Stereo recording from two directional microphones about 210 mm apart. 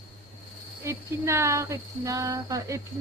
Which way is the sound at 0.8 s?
15° right (ahead or behind).